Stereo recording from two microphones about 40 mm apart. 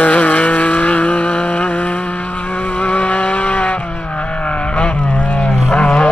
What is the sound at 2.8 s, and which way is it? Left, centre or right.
Vehicle, left.